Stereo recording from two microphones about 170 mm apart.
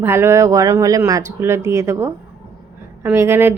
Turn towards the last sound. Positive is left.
turn(degrees=-15)  # may be behind; listen again after turning